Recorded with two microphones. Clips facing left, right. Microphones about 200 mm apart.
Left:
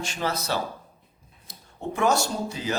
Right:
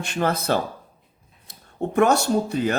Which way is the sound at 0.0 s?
55° right (ahead or behind).